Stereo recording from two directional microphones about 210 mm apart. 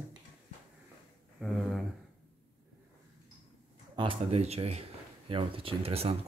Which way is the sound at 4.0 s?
25° right (ahead or behind).